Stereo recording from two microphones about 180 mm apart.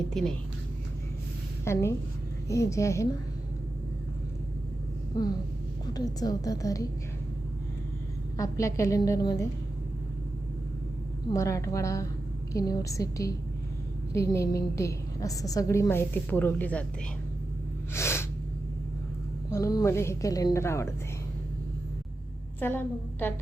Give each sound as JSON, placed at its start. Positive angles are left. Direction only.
{"t": 0.1, "sound": "a woman's voice", "side_deg": 5}
{"t": 1.6, "sound": "a woman's voice", "side_deg": 15}
{"t": 5.1, "sound": "a woman's voice", "side_deg": 20}
{"t": 8.4, "sound": "a woman's voice", "side_deg": 15}
{"t": 11.3, "sound": "a woman's voice", "side_deg": 15}
{"t": 17.9, "sound": "snort", "side_deg": 15}
{"t": 19.5, "sound": "a woman's voice", "side_deg": 15}
{"t": 22.6, "sound": "a woman's voice", "side_deg": 10}